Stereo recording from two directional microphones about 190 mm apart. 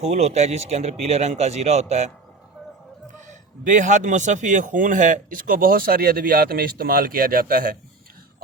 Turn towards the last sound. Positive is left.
turn(degrees=-50)  # may be behind; listen again after turning